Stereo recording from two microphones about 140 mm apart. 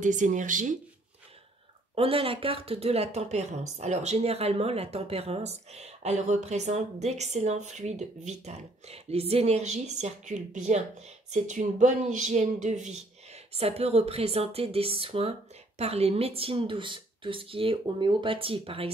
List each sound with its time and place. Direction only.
0.0 s speech: 65° right (ahead or behind)
2.0 s speech: 40° right (ahead or behind); by 13.0 s 55° right (ahead or behind)
13.5 s speech: 45° right (ahead or behind)